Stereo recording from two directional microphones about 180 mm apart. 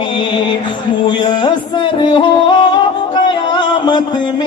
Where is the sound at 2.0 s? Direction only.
25° left (ahead or behind).